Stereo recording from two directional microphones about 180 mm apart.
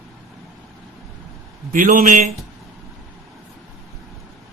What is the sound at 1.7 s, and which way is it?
Speech, 45° right (ahead or behind).